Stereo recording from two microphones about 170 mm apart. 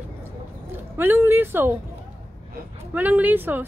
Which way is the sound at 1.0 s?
10° right (ahead or behind).